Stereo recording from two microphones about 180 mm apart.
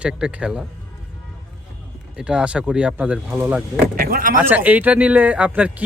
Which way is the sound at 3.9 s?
55° right (ahead or behind).